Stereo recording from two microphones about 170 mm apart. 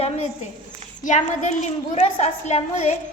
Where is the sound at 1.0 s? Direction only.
45° left (ahead or behind).